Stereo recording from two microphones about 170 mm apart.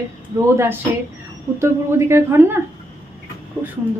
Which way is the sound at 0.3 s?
15° right (ahead or behind).